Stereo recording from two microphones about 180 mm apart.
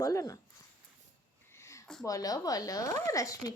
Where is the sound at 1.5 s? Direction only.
15° left (ahead or behind).